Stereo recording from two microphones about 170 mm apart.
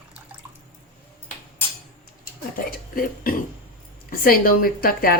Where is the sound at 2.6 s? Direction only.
55° left (ahead or behind).